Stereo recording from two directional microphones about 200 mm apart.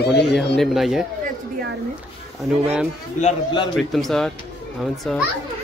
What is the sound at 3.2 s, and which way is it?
Speech, 35° left (ahead or behind).